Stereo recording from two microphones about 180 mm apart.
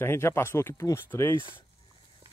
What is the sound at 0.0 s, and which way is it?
Speech, 15° left (ahead or behind).